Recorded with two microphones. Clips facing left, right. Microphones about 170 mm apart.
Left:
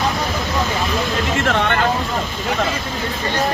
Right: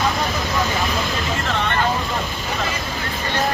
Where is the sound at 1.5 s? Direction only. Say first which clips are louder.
Left 5 dB; 65° left (ahead or behind).